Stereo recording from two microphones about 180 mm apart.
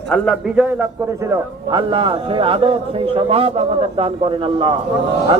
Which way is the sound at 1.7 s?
25° right (ahead or behind).